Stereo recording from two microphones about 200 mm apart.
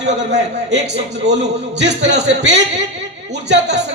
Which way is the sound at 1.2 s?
35° right (ahead or behind).